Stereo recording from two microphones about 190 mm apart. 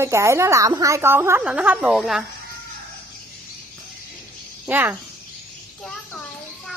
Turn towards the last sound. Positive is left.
turn(degrees=-10)  # may be behind; listen again after turning